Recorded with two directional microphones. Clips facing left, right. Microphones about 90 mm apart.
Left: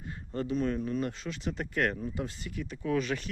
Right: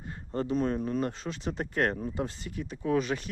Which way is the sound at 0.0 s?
35° right (ahead or behind).